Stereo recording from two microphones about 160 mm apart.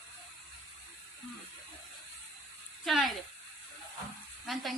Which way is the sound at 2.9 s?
Centre (ahead or behind).